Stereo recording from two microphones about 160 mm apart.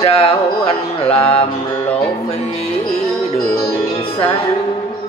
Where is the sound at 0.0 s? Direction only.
35° left (ahead or behind).